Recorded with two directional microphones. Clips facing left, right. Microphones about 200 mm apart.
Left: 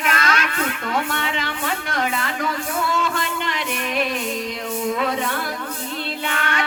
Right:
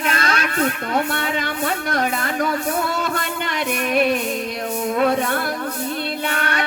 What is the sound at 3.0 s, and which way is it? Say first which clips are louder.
Music: even; 40° right (ahead or behind).